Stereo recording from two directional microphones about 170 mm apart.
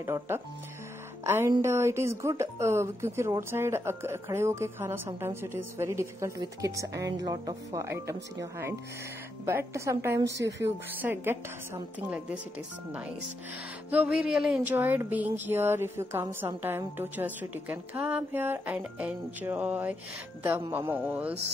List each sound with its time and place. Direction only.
0.0 s speech: 15° right (ahead or behind)
13.8 s speech: 10° right (ahead or behind)